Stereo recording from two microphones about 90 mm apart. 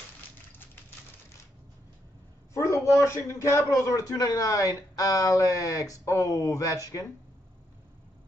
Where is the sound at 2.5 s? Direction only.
35° left (ahead or behind).